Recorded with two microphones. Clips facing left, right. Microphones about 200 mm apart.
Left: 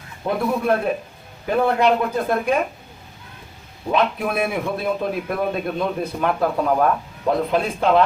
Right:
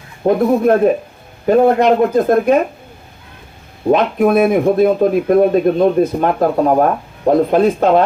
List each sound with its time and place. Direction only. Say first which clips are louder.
0.3 s speech: right 8 dB; 45° right (ahead or behind)
3.8 s speech: right 8 dB; 45° right (ahead or behind)